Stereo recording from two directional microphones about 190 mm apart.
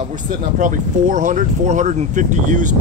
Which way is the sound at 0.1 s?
45° right (ahead or behind).